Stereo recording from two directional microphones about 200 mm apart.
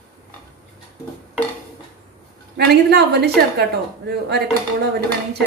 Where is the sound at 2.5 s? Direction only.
55° right (ahead or behind).